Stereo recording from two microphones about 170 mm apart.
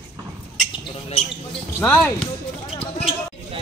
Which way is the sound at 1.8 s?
10° left (ahead or behind).